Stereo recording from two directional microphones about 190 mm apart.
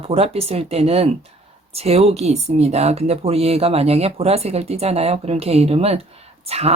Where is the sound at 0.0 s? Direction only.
30° right (ahead or behind).